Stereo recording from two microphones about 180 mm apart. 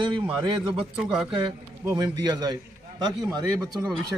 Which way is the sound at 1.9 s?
20° right (ahead or behind).